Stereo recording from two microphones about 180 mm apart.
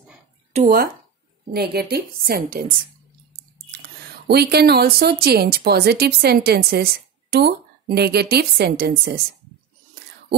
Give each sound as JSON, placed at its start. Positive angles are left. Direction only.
{"t": 0.5, "sound": "speech", "side_deg": -35}
{"t": 1.5, "sound": "speech", "side_deg": -60}
{"t": 3.7, "sound": "speech", "side_deg": -60}